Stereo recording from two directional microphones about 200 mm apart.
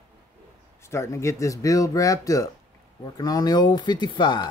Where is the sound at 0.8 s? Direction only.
15° left (ahead or behind).